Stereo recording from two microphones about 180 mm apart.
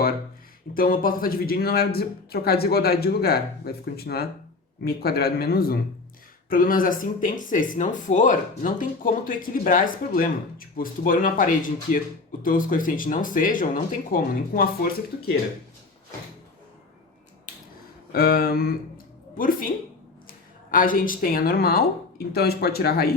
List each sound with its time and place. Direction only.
0.7 s speech: 50° left (ahead or behind)
18.1 s speech: 55° left (ahead or behind)